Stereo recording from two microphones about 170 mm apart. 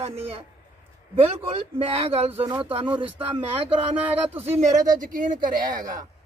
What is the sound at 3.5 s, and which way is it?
Speech, 30° right (ahead or behind).